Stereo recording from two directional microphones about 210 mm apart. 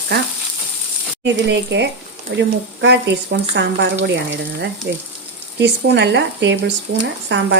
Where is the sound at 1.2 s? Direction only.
55° right (ahead or behind).